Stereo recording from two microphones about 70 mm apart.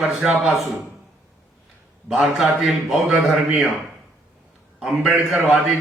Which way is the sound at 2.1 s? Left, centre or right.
Centre.